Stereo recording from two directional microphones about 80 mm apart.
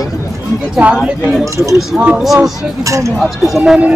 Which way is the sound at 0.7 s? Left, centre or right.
Centre.